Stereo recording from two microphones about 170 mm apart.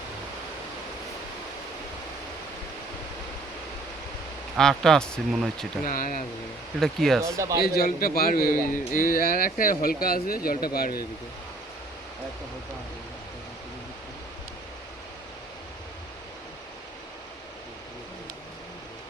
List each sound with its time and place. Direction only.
4.5 s speech: centre (ahead or behind)
5.8 s speech: 55° left (ahead or behind)
6.7 s speech: centre (ahead or behind)
7.2 s speech: 15° right (ahead or behind)
7.6 s speech: 60° left (ahead or behind)